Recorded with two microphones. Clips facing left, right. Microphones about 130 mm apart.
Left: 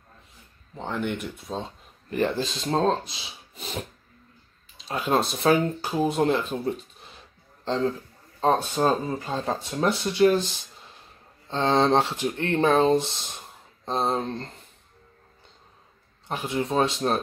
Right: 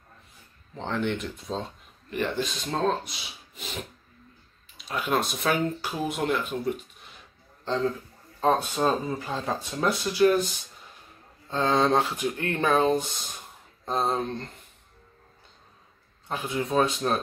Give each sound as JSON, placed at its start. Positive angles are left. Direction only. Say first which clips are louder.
{"t": 0.7, "sound": "speech", "louder": "right 1 dB", "side_deg": 10}
{"t": 2.0, "sound": "speech", "louder": "left 3 dB", "side_deg": 35}
{"t": 4.7, "sound": "a man's voice", "louder": "left 3 dB", "side_deg": 30}
{"t": 16.3, "sound": "speech", "louder": "left 2 dB", "side_deg": 30}